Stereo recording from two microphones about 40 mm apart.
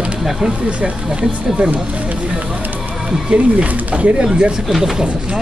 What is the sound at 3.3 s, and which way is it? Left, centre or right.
Speech, right.